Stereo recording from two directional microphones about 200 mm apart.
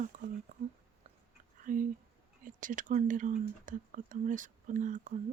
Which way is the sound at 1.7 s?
40° right (ahead or behind).